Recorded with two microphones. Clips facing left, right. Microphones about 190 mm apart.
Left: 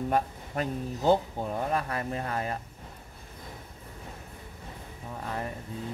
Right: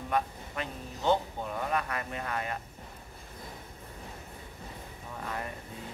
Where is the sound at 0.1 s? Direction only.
40° left (ahead or behind).